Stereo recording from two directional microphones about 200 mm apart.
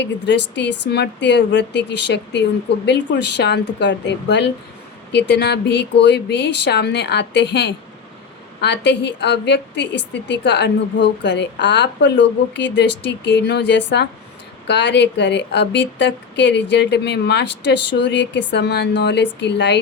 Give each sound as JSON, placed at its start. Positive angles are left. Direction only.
{"t": 0.0, "sound": "a woman's voice", "side_deg": 60}